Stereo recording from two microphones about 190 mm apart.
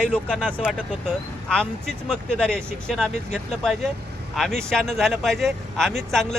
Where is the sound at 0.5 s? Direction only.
5° right (ahead or behind).